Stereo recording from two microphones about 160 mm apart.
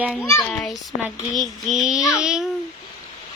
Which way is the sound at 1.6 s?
Centre (ahead or behind).